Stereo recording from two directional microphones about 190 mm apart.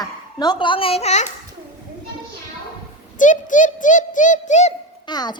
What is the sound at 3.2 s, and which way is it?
A child's voice, 40° left (ahead or behind).